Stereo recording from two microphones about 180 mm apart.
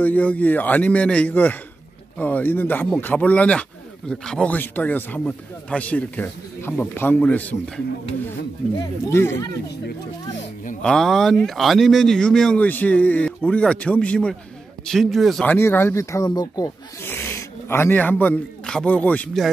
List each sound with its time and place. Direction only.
0.0 s speech: 10° left (ahead or behind)
10.8 s speech: 5° left (ahead or behind)